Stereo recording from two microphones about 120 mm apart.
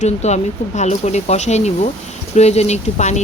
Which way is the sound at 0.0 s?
70° left (ahead or behind).